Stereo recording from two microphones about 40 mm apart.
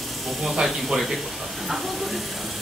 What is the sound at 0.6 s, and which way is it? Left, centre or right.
Speech, centre.